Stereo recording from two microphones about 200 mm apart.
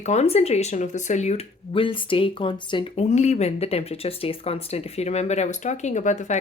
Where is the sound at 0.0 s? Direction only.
35° left (ahead or behind).